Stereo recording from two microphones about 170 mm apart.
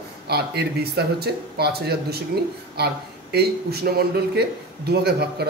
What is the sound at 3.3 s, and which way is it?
A man's voice, 70° right (ahead or behind).